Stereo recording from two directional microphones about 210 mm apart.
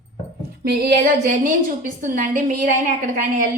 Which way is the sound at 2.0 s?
40° right (ahead or behind).